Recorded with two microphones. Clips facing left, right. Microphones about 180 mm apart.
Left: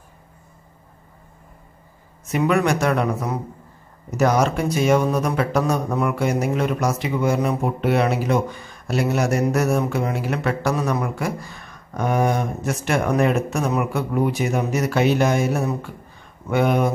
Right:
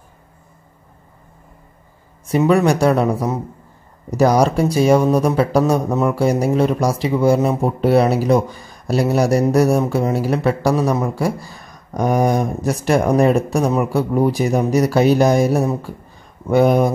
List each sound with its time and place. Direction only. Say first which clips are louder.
2.2 s speech: right 5 dB; 30° right (ahead or behind)